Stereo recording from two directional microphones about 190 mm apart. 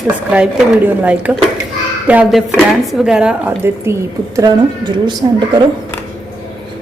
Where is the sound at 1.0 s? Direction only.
5° right (ahead or behind).